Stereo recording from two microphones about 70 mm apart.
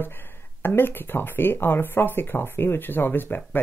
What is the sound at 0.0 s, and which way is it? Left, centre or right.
Speech, left.